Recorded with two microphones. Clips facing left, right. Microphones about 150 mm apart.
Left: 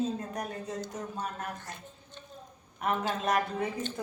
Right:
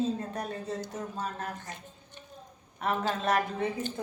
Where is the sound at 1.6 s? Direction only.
15° right (ahead or behind).